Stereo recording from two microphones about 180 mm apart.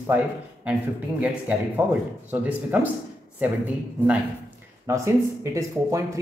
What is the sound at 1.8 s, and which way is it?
Speech, 10° right (ahead or behind).